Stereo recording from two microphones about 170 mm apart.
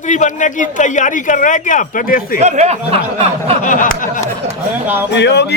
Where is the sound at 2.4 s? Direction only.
45° right (ahead or behind).